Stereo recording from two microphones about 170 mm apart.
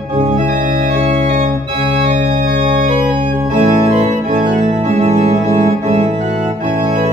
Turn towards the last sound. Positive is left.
turn(degrees=-35)  # may be behind; listen again after turning